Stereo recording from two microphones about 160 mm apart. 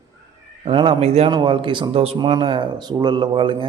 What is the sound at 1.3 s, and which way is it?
A man's voice, 30° right (ahead or behind).